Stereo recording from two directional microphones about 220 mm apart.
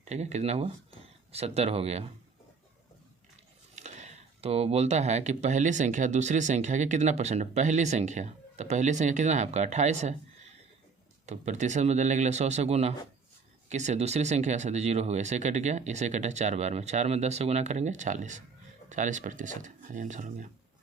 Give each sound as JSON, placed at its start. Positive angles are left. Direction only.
{"t": 0.0, "sound": "speech", "side_deg": -30}
{"t": 3.8, "sound": "speech", "side_deg": -30}
{"t": 11.3, "sound": "speech", "side_deg": -30}